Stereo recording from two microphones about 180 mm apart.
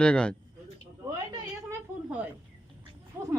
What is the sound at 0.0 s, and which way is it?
Speech, 5° left (ahead or behind).